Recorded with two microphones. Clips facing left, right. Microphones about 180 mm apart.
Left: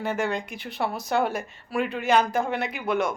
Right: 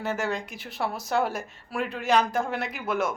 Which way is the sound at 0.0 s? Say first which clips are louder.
Left 2 dB; centre (ahead or behind).